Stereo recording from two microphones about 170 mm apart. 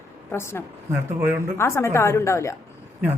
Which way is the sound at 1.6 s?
15° left (ahead or behind).